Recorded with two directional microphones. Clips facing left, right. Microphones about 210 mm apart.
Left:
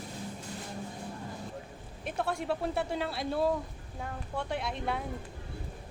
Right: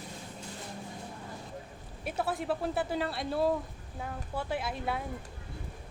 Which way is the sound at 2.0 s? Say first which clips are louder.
Even; 5° right (ahead or behind).